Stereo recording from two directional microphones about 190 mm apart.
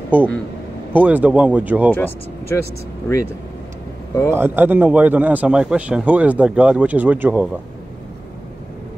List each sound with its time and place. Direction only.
0.1 s a man's voice: 10° right (ahead or behind)
1.9 s speech: 10° left (ahead or behind)
4.3 s a man's voice: 10° right (ahead or behind)